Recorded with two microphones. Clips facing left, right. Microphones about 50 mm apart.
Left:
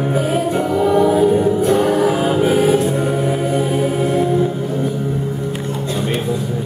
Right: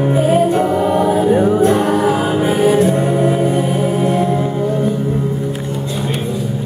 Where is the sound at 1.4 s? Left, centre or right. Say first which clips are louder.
Right 2 dB; right.